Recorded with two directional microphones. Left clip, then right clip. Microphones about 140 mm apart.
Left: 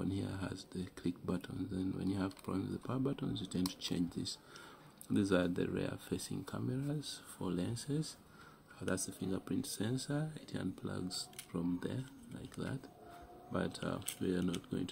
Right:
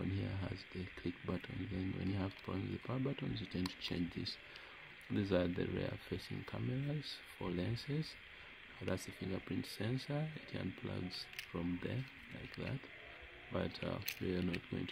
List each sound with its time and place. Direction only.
0.0 s speech: 10° right (ahead or behind)
8.8 s speech: 20° right (ahead or behind)
13.5 s speech: 15° right (ahead or behind)